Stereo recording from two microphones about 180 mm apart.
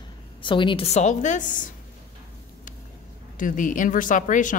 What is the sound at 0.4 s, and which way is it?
A woman's voice, 25° left (ahead or behind).